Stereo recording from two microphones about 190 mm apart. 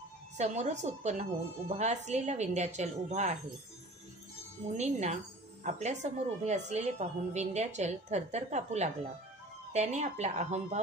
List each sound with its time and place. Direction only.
0.4 s a woman's voice: 35° right (ahead or behind)
4.7 s a woman's voice: 35° right (ahead or behind)